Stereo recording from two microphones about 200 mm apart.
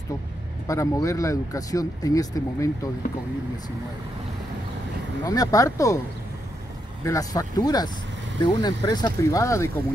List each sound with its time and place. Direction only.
0.7 s speech: 15° left (ahead or behind)
5.2 s speech: 20° left (ahead or behind)
7.1 s speech: 15° left (ahead or behind)